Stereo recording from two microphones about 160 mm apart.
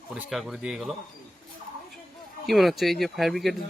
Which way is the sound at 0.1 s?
Centre (ahead or behind).